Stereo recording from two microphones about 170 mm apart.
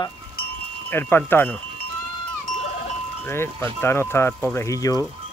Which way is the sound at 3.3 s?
15° left (ahead or behind).